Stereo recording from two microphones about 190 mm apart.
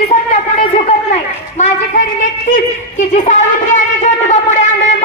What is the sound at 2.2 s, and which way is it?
Speech, 40° left (ahead or behind).